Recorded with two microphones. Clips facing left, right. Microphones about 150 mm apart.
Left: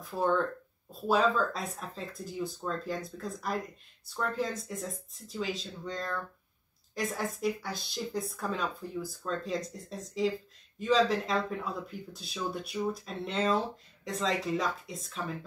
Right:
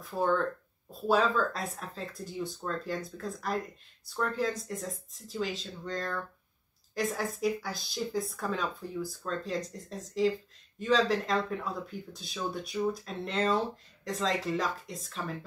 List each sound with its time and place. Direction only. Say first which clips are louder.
0.1 s speech: even; centre (ahead or behind)